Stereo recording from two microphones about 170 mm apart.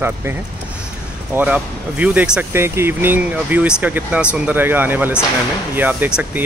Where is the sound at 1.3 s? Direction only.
10° right (ahead or behind).